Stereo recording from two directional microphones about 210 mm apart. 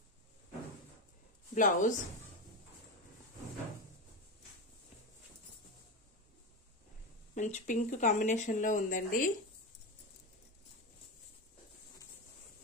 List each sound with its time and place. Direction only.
1.5 s speech: 40° left (ahead or behind)
7.3 s speech: 35° left (ahead or behind)